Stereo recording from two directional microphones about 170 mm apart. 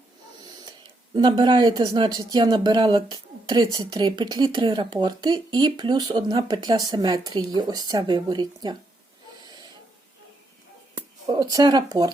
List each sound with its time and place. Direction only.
1.1 s speech: 25° right (ahead or behind)
10.9 s speech: 20° right (ahead or behind)